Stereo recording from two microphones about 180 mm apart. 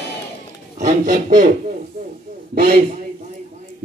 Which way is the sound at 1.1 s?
50° right (ahead or behind).